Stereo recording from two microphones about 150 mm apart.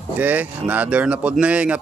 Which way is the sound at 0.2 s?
10° right (ahead or behind).